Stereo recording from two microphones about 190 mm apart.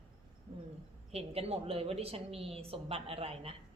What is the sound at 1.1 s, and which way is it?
A woman's voice, 30° right (ahead or behind).